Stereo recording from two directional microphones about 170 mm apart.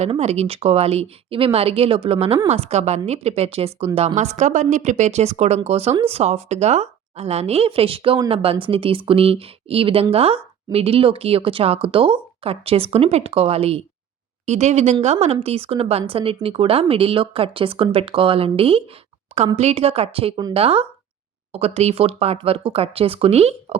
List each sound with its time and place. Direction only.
0.0 s speech: 40° right (ahead or behind)